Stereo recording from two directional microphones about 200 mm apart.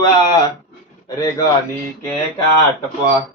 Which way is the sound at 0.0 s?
20° left (ahead or behind).